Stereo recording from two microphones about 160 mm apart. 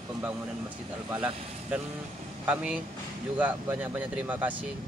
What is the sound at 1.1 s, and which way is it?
Speech, 10° right (ahead or behind).